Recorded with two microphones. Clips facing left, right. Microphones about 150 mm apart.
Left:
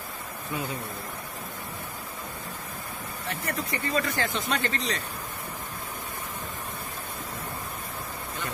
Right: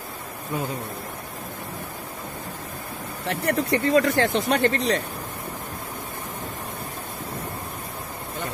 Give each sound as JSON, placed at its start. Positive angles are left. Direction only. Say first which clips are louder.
{"t": 3.3, "sound": "speech", "louder": "right 9 dB", "side_deg": -70}